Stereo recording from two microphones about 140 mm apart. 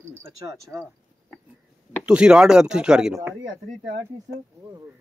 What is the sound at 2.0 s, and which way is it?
Speech, 5° right (ahead or behind).